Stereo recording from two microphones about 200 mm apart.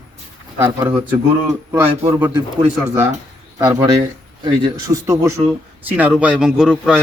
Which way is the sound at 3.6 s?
15° right (ahead or behind).